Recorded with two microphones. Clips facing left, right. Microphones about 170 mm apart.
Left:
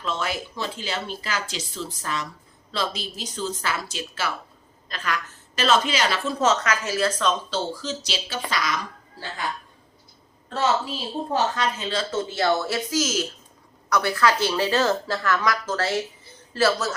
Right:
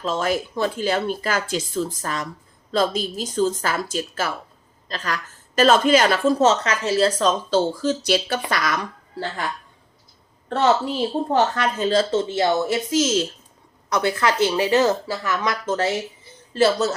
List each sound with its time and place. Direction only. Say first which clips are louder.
0.0 s speech: right 6 dB; 45° right (ahead or behind)
6.4 s a woman's voice: right 4 dB; 30° right (ahead or behind); by 8.9 s 55° right (ahead or behind)
10.5 s a woman's voice: right 5 dB; 60° right (ahead or behind); by 12.0 s 45° right (ahead or behind)
12.1 s speech: right 3 dB; 20° right (ahead or behind)